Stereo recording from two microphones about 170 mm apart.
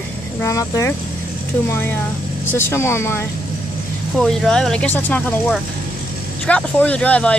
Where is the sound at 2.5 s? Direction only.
15° left (ahead or behind).